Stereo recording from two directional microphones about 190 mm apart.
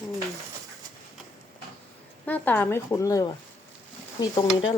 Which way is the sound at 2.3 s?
10° left (ahead or behind).